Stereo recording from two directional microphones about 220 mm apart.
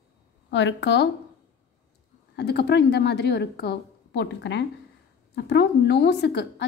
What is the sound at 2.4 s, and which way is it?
A woman's voice, 50° left (ahead or behind).